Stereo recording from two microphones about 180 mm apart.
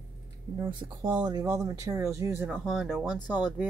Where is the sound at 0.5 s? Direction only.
20° right (ahead or behind).